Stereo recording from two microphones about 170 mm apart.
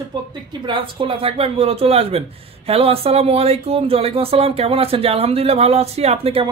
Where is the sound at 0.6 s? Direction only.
30° right (ahead or behind).